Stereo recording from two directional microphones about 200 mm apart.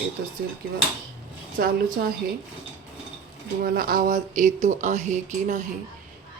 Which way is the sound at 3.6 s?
45° right (ahead or behind).